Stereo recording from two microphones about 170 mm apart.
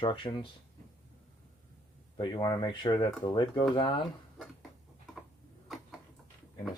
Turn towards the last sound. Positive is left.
turn(degrees=0)  # may be behind; listen again after turning